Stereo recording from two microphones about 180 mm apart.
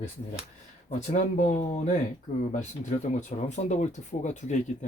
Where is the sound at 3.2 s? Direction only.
40° left (ahead or behind).